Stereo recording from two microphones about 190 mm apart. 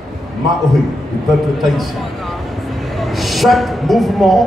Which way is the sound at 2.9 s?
Centre (ahead or behind).